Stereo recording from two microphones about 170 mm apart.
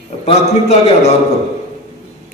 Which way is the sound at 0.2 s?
40° left (ahead or behind).